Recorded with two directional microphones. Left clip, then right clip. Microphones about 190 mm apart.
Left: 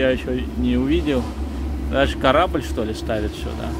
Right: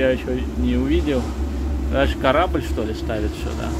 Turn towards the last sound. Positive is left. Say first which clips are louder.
# left 1 dB
turn(degrees=15)  # may be behind; listen again after turning